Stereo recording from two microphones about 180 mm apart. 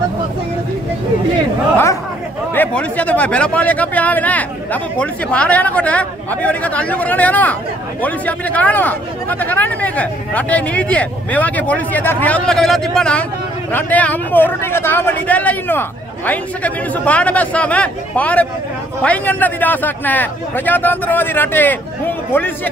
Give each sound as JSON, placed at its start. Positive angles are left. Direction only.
{"t": 2.5, "sound": "speech", "side_deg": 10}